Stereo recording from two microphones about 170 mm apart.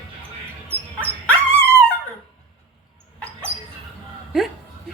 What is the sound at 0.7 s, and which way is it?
Dog, 10° left (ahead or behind).